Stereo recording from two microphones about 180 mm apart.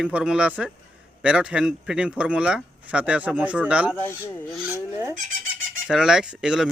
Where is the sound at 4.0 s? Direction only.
15° left (ahead or behind).